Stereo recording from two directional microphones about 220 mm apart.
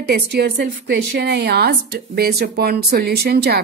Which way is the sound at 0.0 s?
45° right (ahead or behind).